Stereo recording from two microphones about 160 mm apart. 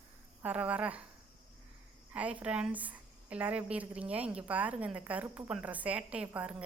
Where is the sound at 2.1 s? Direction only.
10° right (ahead or behind).